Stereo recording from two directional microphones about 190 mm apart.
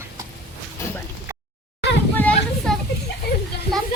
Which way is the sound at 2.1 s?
10° left (ahead or behind).